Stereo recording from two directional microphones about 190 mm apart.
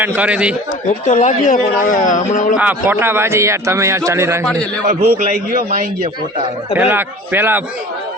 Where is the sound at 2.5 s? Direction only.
10° right (ahead or behind).